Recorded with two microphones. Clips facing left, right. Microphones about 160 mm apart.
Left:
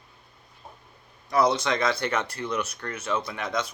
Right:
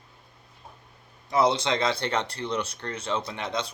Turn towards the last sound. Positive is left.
turn(degrees=-30)  # may be behind; listen again after turning